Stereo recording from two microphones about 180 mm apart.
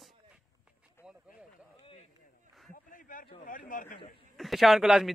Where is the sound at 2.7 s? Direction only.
50° left (ahead or behind).